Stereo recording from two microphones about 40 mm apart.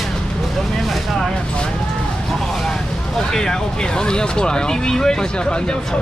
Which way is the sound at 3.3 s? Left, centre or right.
Centre.